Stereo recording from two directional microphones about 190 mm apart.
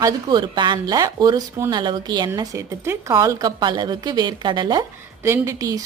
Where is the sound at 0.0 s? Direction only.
20° right (ahead or behind).